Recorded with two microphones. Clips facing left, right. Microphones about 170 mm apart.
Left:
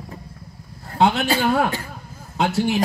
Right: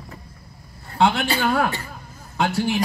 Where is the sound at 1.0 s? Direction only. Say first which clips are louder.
Left 1 dB; 20° left (ahead or behind).